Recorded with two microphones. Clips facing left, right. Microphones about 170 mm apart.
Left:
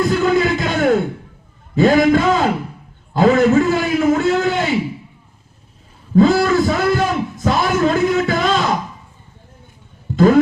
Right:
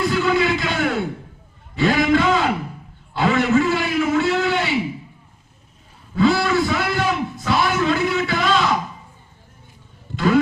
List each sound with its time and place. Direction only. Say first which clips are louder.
0.0 s music: left 3 dB; 45° left (ahead or behind)
1.7 s a man's voice: left 5 dB; 45° left (ahead or behind)
6.1 s a sound: left 5 dB; 45° left (ahead or behind)
10.2 s music: left 6 dB; 45° left (ahead or behind)